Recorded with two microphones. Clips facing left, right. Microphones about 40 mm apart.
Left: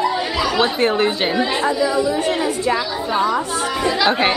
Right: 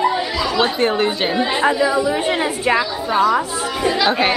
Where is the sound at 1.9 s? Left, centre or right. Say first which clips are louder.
Even; right.